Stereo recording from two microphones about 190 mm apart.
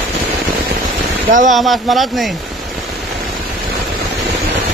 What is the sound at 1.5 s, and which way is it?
Speech, centre (ahead or behind).